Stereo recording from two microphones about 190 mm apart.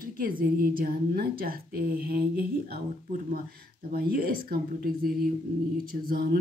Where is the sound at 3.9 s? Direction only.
50° right (ahead or behind).